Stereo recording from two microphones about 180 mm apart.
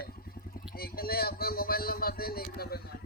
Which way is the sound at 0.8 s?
55° left (ahead or behind).